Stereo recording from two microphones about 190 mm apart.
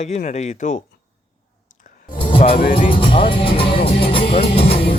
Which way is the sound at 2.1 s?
30° left (ahead or behind).